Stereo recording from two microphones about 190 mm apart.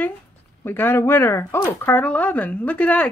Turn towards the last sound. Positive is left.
turn(degrees=10)  # may be behind; listen again after turning